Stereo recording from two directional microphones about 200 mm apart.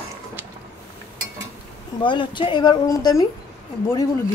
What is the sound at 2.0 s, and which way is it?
Speech, 25° left (ahead or behind).